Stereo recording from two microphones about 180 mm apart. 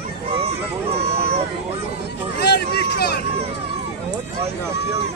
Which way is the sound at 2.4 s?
65° left (ahead or behind).